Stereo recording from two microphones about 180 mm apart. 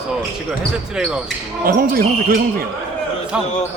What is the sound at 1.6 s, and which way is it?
Speech, 55° right (ahead or behind).